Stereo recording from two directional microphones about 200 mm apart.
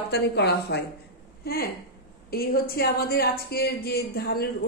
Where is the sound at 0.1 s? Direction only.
55° left (ahead or behind).